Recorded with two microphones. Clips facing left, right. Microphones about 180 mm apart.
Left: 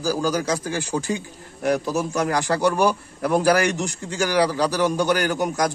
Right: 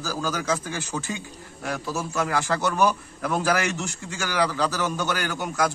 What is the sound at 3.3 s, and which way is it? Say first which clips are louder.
A man's voice: left 6 dB; 15° left (ahead or behind).